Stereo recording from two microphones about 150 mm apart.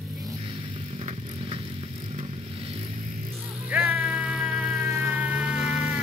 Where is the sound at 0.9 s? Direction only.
40° right (ahead or behind).